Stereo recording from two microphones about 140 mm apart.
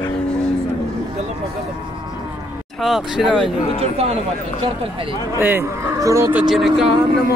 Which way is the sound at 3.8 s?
45° right (ahead or behind).